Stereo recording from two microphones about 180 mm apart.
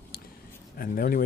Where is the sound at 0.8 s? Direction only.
55° left (ahead or behind).